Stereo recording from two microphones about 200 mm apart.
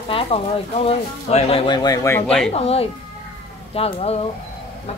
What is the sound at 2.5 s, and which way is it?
Speech, 30° left (ahead or behind).